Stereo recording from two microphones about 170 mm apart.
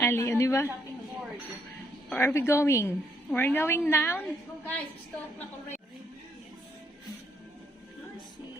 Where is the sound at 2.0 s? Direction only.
10° left (ahead or behind).